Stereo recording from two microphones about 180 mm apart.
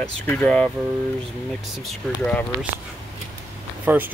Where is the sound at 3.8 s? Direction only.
10° right (ahead or behind).